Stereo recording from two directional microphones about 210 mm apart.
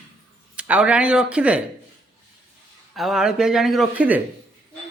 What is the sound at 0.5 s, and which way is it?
Speech, 5° right (ahead or behind).